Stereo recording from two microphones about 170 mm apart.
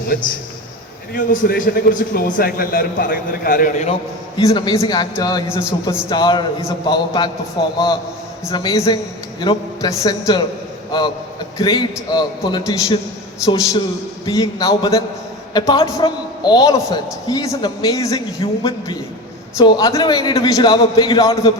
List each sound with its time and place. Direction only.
0.1 s a man's voice: 55° left (ahead or behind)
4.4 s a man's voice: 20° left (ahead or behind)
11.5 s a man's voice: 25° left (ahead or behind)